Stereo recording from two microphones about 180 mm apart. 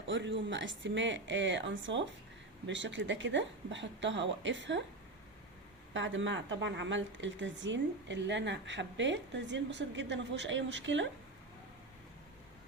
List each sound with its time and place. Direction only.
0.1 s speech: 90° right
5.9 s speech: 90° right